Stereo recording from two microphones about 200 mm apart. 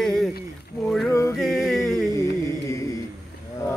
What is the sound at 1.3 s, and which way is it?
A capella, centre (ahead or behind).